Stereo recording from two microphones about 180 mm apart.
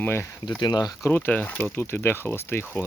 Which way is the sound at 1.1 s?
10° left (ahead or behind).